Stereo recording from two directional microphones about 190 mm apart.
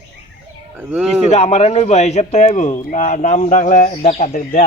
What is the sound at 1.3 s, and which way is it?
Speech, 35° left (ahead or behind).